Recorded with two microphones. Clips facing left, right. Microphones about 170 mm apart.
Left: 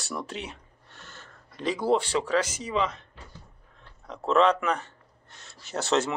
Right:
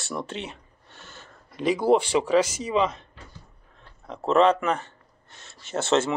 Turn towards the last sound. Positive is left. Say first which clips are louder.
# right 3 dB
turn(degrees=0)  # may be behind; listen again after turning